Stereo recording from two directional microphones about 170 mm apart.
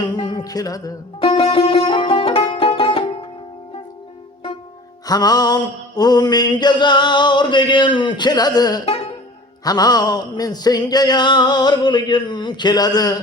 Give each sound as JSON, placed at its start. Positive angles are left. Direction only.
{"t": 0.1, "sound": "music", "side_deg": 25}
{"t": 1.2, "sound": "music", "side_deg": 35}
{"t": 5.0, "sound": "music", "side_deg": 25}